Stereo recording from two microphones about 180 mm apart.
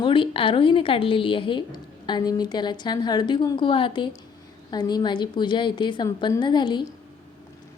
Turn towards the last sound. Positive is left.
turn(degrees=25)  # may be behind; listen again after turning